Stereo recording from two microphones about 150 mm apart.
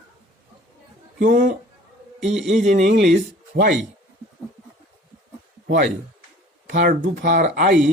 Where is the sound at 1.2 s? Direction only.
65° right (ahead or behind).